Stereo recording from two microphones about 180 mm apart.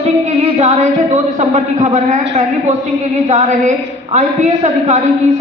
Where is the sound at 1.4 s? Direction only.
40° right (ahead or behind).